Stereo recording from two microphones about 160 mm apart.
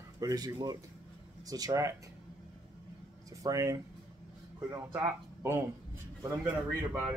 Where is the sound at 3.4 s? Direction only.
20° right (ahead or behind).